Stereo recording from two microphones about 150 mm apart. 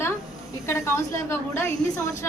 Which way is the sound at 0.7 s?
15° left (ahead or behind).